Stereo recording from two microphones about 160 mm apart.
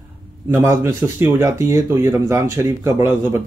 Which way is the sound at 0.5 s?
15° right (ahead or behind).